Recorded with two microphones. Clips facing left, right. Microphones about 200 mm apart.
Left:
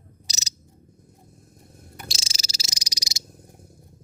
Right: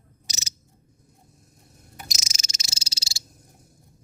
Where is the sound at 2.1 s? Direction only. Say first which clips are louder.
Left 2 dB; 30° left (ahead or behind).